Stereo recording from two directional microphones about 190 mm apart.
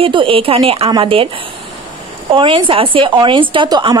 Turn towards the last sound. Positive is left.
turn(degrees=-25)  # may be behind; listen again after turning